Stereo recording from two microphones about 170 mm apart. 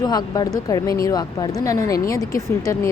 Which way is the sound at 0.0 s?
25° left (ahead or behind).